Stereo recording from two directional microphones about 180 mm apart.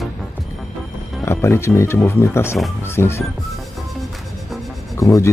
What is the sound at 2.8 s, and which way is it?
Music, 15° left (ahead or behind).